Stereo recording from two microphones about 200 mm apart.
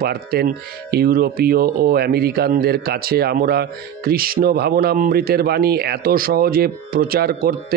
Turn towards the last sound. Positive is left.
turn(degrees=-50)  # may be behind; listen again after turning